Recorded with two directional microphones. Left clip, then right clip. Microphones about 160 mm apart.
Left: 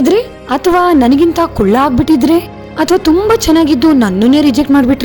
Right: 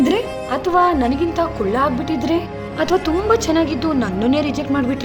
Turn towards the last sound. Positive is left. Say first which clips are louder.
# left 10 dB
turn(degrees=45)  # may be behind; listen again after turning